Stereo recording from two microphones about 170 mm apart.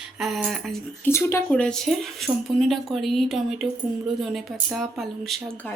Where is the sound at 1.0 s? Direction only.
15° left (ahead or behind).